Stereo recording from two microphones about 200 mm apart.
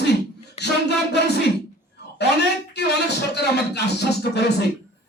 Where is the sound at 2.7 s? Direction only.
55° left (ahead or behind).